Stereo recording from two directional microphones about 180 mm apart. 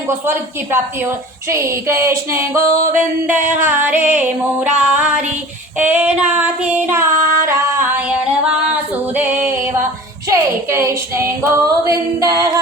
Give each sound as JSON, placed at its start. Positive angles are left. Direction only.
{"t": 0.1, "sound": "a woman's voice", "side_deg": -15}
{"t": 8.7, "sound": "female singing", "side_deg": -10}
{"t": 10.2, "sound": "a woman's voice", "side_deg": -15}